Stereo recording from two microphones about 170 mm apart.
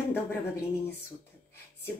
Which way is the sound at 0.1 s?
15° left (ahead or behind).